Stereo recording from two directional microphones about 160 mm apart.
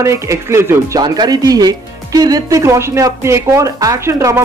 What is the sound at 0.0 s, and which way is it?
Speech, 20° right (ahead or behind).